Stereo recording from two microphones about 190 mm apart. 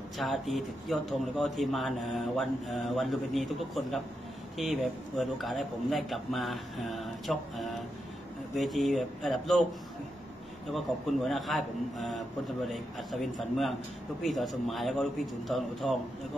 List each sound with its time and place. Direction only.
0.2 s speech: centre (ahead or behind)
10.7 s speech: centre (ahead or behind)